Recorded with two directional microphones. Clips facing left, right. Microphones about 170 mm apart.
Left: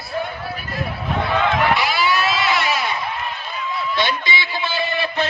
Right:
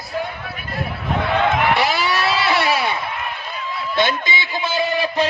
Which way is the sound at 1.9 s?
40° right (ahead or behind).